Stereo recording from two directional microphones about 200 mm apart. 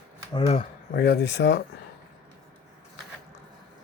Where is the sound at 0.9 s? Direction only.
55° left (ahead or behind).